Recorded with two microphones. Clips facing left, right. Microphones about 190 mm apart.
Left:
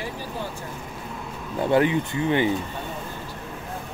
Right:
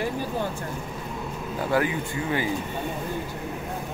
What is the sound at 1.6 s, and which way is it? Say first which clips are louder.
Speech: left 5 dB; 25° left (ahead or behind).